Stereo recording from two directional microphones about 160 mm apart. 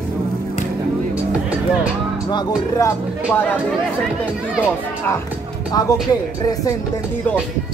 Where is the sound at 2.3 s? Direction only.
20° left (ahead or behind).